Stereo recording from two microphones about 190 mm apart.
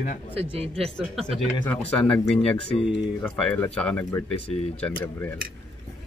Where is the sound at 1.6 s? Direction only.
5° left (ahead or behind).